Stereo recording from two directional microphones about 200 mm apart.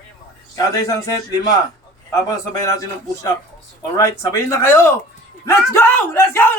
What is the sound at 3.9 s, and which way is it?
Speech, 15° left (ahead or behind).